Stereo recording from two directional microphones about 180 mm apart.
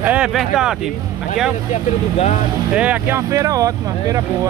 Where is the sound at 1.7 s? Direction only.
40° left (ahead or behind).